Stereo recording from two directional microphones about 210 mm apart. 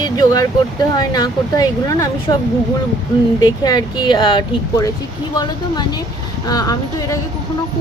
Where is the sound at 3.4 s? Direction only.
20° left (ahead or behind).